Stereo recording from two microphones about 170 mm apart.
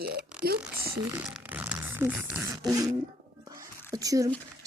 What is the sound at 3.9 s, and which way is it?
Speech, 20° right (ahead or behind).